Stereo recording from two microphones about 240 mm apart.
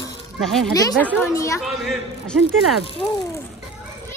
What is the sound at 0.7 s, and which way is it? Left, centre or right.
Speech, centre.